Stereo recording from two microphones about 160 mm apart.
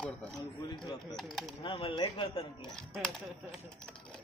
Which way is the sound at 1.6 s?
30° left (ahead or behind).